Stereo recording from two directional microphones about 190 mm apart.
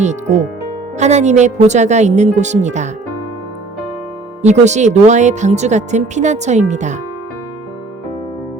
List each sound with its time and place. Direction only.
0.0 s speech: 40° right (ahead or behind)
4.4 s speech: 40° right (ahead or behind)